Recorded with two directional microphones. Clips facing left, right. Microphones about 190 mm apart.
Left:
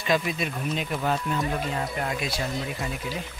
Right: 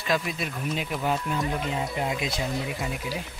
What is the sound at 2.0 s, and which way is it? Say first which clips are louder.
Speech: right 1 dB; 20° right (ahead or behind).